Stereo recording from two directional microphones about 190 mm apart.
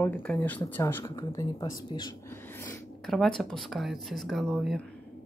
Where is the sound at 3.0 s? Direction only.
Centre (ahead or behind).